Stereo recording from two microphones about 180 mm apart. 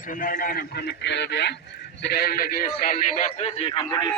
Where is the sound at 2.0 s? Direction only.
60° left (ahead or behind); by 4.1 s 25° left (ahead or behind).